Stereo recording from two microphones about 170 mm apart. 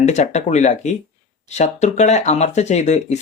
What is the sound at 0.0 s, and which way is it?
Speech, 40° left (ahead or behind).